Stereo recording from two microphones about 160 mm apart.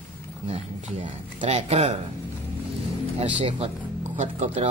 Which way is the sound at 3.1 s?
35° right (ahead or behind).